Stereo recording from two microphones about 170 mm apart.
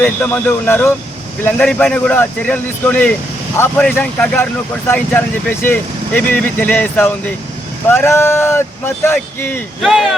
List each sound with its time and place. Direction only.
0.0 s speech: 10° left (ahead or behind)
9.8 s speech: centre (ahead or behind)